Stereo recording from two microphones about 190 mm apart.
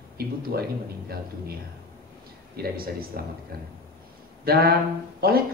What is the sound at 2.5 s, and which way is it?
Speech, 50° right (ahead or behind).